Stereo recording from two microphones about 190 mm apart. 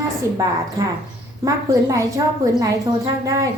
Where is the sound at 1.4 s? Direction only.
20° right (ahead or behind).